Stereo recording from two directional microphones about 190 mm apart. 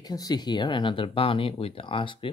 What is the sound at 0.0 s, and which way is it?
Speech, 20° left (ahead or behind).